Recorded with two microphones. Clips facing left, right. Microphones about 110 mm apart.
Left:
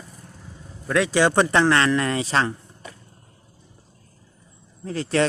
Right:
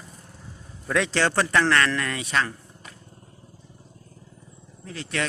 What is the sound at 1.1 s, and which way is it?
Speech, 15° left (ahead or behind).